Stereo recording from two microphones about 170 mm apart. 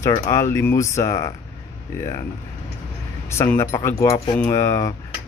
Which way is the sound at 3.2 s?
15° left (ahead or behind).